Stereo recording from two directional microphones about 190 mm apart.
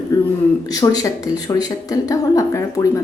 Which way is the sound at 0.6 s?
20° left (ahead or behind).